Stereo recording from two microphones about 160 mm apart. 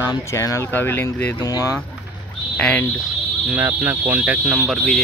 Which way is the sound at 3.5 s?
10° right (ahead or behind).